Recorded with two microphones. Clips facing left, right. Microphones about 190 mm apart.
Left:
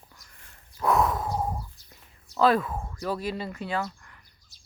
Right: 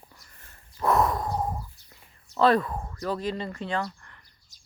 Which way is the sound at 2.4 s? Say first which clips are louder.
Right 1 dB; 5° left (ahead or behind).